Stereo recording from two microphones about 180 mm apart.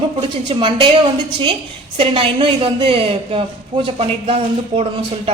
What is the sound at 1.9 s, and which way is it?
A woman's voice, 30° right (ahead or behind).